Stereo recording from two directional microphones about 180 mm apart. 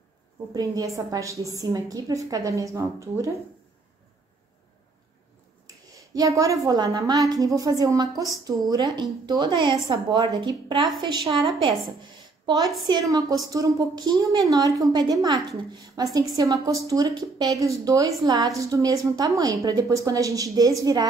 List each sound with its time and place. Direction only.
0.5 s a woman's voice: 20° right (ahead or behind)
6.1 s a woman's voice: 20° right (ahead or behind)
12.8 s a woman's voice: 20° right (ahead or behind)